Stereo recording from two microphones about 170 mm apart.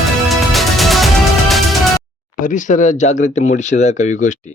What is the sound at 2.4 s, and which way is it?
Speech, 50° left (ahead or behind).